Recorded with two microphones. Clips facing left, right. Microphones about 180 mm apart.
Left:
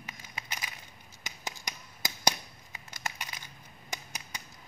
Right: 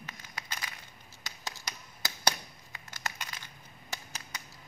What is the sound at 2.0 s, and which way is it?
Crumpling, 15° left (ahead or behind).